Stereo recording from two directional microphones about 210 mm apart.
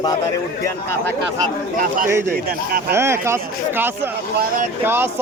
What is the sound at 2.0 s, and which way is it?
A man's voice, 10° right (ahead or behind).